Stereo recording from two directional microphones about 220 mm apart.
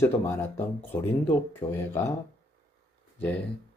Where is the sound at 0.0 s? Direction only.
10° left (ahead or behind).